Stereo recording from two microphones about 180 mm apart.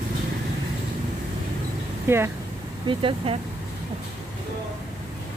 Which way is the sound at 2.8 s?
30° right (ahead or behind).